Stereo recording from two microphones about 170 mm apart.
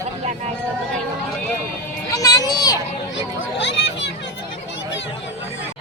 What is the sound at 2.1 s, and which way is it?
Children playing, 20° left (ahead or behind).